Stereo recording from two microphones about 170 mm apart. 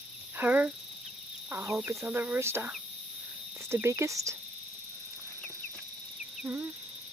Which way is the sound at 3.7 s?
15° right (ahead or behind).